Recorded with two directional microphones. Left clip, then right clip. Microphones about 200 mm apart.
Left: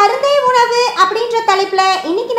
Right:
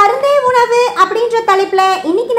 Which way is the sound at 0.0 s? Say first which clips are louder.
Right 1 dB; 25° right (ahead or behind).